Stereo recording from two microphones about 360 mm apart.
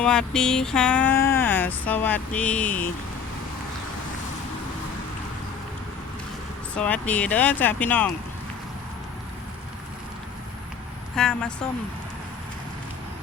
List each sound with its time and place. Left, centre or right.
0.0 s vehicle: centre
6.7 s vehicle: centre
11.1 s vehicle: centre